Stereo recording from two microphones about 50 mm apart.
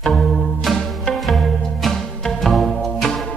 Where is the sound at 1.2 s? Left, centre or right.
Centre.